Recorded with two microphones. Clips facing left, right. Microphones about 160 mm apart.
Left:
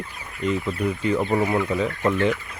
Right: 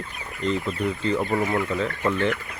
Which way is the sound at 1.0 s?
10° left (ahead or behind).